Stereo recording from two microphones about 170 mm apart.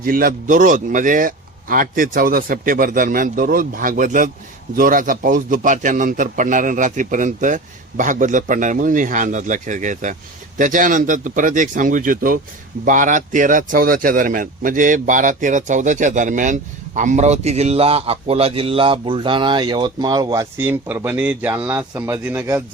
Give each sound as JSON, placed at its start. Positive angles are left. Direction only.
{"t": 0.0, "sound": "a man's voice", "side_deg": -55}